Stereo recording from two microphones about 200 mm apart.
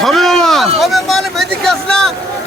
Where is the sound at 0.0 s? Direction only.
Centre (ahead or behind).